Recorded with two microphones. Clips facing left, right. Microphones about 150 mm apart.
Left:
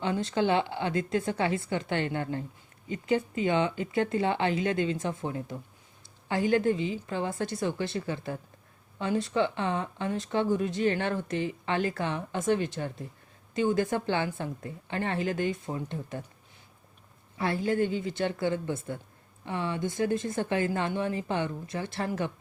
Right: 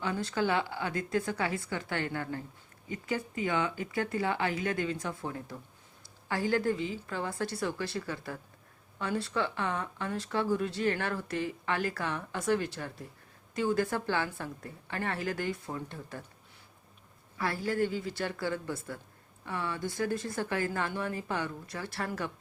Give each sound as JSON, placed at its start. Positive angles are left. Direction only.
{"t": 0.0, "sound": "speech", "side_deg": 25}
{"t": 17.3, "sound": "speech", "side_deg": 20}